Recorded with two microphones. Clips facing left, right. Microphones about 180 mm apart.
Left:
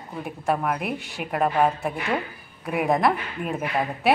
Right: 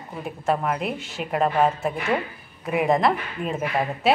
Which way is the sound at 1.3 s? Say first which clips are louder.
Right 1 dB; centre (ahead or behind).